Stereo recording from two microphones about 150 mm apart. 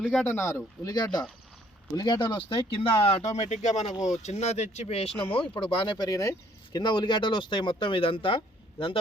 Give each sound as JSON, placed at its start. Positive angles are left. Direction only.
{"t": 0.3, "sound": "speech", "side_deg": 15}